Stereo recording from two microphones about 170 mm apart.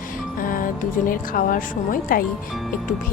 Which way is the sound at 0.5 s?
55° left (ahead or behind).